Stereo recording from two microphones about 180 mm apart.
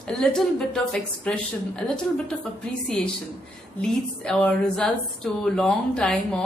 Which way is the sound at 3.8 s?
10° left (ahead or behind).